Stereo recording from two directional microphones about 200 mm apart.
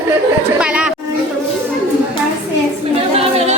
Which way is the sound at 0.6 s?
5° right (ahead or behind).